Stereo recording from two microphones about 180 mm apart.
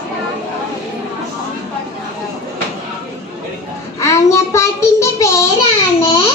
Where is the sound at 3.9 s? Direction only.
15° left (ahead or behind).